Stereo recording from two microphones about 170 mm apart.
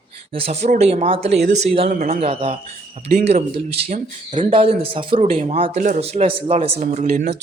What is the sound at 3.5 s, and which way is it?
Speech, 45° right (ahead or behind).